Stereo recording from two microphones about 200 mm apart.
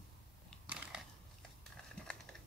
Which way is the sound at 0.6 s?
5° right (ahead or behind).